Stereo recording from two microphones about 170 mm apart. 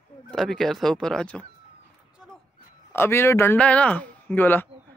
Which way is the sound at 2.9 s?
15° left (ahead or behind).